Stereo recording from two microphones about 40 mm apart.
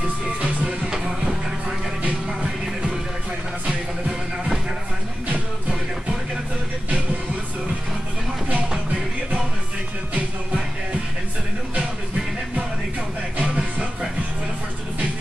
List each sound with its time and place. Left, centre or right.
0.4 s music: right
0.8 s music: centre
13.4 s music: right